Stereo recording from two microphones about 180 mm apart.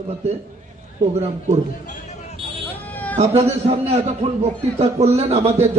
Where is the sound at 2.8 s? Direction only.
10° left (ahead or behind).